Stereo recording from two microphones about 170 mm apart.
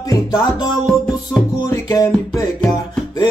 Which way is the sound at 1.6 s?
20° left (ahead or behind).